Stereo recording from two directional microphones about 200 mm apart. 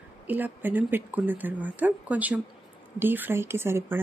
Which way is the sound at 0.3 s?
10° right (ahead or behind).